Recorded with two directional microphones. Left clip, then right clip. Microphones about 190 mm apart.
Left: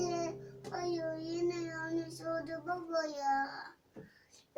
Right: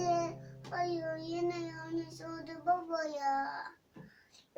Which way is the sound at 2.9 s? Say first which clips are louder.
Even; 10° right (ahead or behind).